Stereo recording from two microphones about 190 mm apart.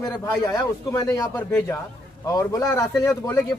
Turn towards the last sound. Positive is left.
turn(degrees=15)  # may be behind; listen again after turning